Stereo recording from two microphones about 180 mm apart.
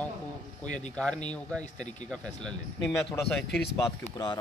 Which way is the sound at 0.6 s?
45° left (ahead or behind).